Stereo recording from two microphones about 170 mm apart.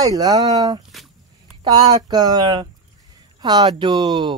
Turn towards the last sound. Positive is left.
turn(degrees=-25)  # may be behind; listen again after turning